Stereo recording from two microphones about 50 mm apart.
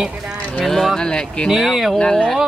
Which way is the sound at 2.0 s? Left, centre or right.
Centre.